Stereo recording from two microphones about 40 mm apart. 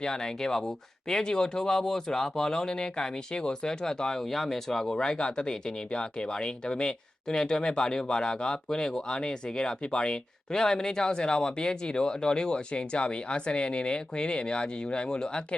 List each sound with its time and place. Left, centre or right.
0.0 s speech: centre